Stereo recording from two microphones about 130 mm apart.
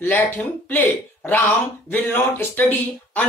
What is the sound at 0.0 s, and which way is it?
Speech, 15° left (ahead or behind).